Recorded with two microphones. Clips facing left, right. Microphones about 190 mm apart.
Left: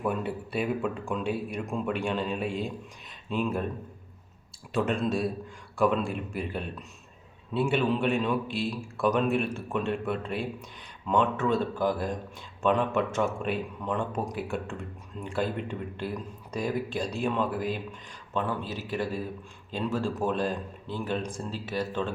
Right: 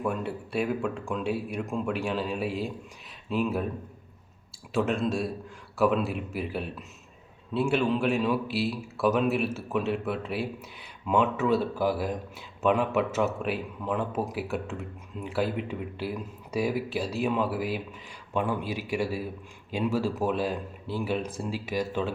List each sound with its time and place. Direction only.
0.0 s a man's voice: centre (ahead or behind)
4.7 s a man's voice: centre (ahead or behind)